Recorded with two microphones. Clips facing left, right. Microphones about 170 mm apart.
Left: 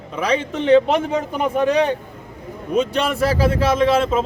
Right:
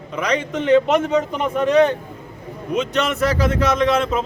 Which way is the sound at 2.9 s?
30° left (ahead or behind).